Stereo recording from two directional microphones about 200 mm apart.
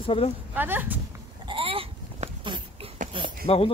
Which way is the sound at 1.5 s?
25° right (ahead or behind).